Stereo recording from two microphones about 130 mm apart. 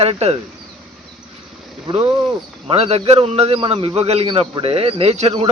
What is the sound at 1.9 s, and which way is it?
A man's voice, 50° right (ahead or behind).